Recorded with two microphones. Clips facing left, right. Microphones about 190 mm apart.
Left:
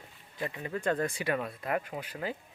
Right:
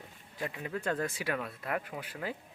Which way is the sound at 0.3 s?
Centre (ahead or behind).